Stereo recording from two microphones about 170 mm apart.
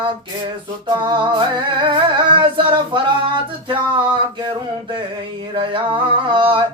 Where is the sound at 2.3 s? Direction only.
30° right (ahead or behind).